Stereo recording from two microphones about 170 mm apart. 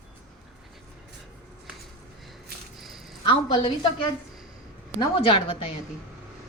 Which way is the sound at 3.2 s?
30° left (ahead or behind).